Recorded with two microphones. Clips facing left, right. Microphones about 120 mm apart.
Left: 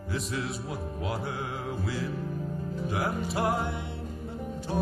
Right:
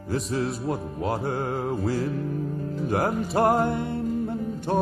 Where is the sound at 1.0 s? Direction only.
40° right (ahead or behind).